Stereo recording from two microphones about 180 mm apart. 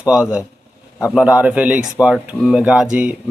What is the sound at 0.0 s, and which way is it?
Speech, 5° right (ahead or behind).